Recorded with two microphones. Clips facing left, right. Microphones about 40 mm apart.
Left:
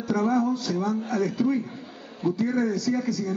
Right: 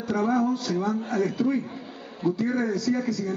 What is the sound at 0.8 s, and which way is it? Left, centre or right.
Speech, right.